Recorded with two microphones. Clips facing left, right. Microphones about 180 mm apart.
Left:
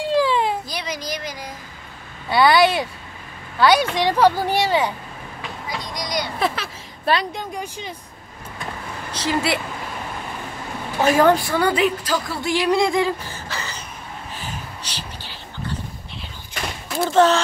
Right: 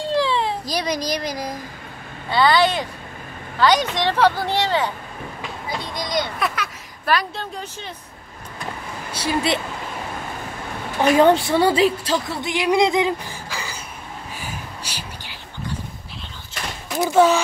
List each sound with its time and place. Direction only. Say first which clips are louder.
0.1 s a sound: left 2 dB; 10° left (ahead or behind)
0.7 s a woman's voice: right 5 dB; 35° right (ahead or behind)
2.3 s speech: left 2 dB; 10° left (ahead or behind)
5.7 s speech: right 2 dB; 25° right (ahead or behind)
6.4 s a sound: left 2 dB; 30° left (ahead or behind); by 7.9 s 15° left (ahead or behind)
9.1 s a woman's voice: even; 10° right (ahead or behind)
11.2 s speech: right 2 dB; 25° right (ahead or behind); by 13.8 s 10° right (ahead or behind)
14.4 s a sound: even; 10° right (ahead or behind)
17.0 s a woman's voice: even; 10° right (ahead or behind)